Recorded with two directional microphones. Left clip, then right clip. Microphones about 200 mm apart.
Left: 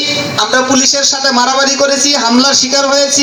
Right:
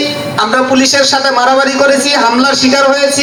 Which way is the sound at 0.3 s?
45° left (ahead or behind).